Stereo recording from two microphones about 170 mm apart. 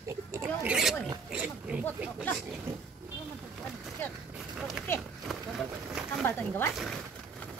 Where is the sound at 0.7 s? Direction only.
Centre (ahead or behind).